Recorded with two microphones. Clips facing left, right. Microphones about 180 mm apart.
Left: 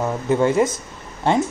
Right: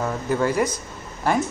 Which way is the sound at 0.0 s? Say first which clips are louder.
Left 4 dB; 20° left (ahead or behind).